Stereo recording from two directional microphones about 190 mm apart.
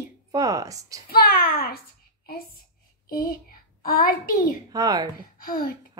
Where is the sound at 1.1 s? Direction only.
50° left (ahead or behind).